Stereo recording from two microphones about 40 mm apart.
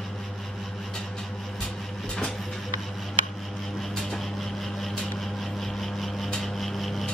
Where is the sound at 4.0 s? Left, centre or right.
Centre.